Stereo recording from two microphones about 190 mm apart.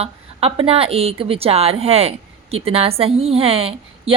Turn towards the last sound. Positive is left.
turn(degrees=-30)  # may be behind; listen again after turning